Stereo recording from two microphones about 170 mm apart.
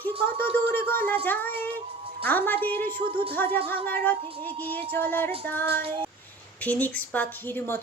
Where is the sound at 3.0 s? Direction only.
30° right (ahead or behind).